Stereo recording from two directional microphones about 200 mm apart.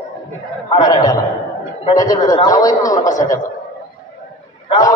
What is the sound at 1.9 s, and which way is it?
Speech, 20° left (ahead or behind).